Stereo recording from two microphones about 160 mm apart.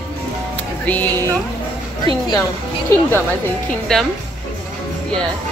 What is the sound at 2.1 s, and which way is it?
Speech, 35° right (ahead or behind).